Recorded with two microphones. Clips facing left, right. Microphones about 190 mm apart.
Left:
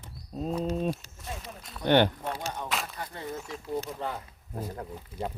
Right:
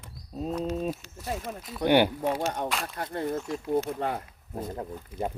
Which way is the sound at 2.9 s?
55° right (ahead or behind).